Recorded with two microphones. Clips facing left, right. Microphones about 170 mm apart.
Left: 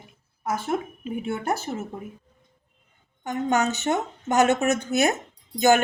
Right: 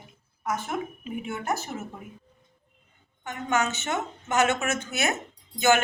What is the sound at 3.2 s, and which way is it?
A woman's voice, 40° left (ahead or behind).